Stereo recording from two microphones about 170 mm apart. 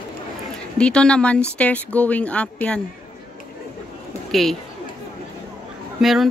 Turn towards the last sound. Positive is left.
turn(degrees=0)  # may be behind; listen again after turning